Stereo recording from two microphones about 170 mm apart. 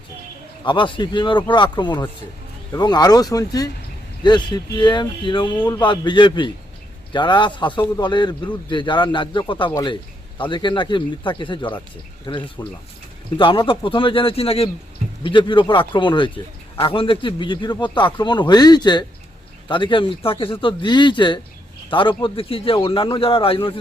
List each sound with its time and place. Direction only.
0.6 s a man's voice: 30° left (ahead or behind)